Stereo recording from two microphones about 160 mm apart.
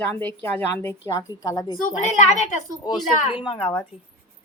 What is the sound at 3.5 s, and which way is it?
Speech, 35° left (ahead or behind).